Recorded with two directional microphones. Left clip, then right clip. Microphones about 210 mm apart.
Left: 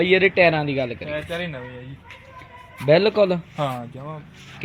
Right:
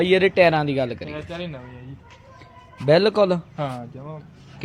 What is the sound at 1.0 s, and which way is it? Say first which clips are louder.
Speech: left 5 dB; 30° left (ahead or behind).